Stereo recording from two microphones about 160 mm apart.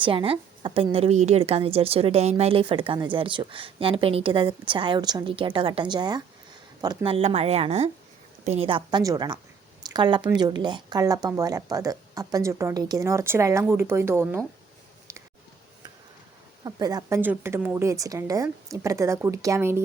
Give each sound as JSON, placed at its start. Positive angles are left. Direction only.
{"t": 0.0, "sound": "a woman's voice", "side_deg": -35}
{"t": 16.6, "sound": "speech", "side_deg": -25}
{"t": 17.2, "sound": "a woman's voice", "side_deg": -15}